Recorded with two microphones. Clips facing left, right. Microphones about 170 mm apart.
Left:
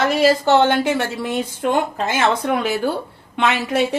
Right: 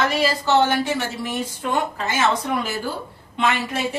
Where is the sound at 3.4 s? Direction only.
75° left (ahead or behind).